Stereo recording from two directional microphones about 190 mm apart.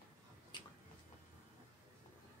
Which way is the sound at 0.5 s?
25° left (ahead or behind).